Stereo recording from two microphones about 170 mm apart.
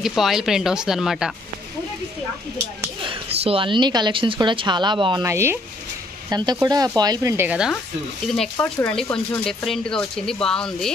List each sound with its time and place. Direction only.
0.0 s speech: centre (ahead or behind)
3.1 s speech: 30° right (ahead or behind)
5.2 s speech: 15° right (ahead or behind)
8.5 s speech: 15° left (ahead or behind)